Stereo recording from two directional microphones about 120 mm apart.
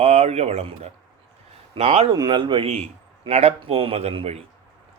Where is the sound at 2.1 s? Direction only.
40° right (ahead or behind).